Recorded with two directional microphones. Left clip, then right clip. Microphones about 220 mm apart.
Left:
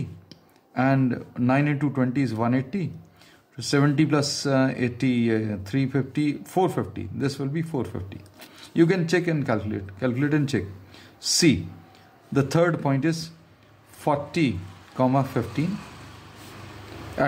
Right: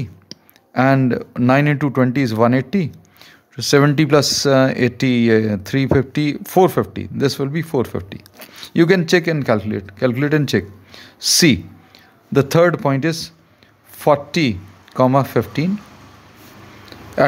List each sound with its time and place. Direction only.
0.3 s speech: 40° right (ahead or behind)
17.2 s speech: 40° right (ahead or behind)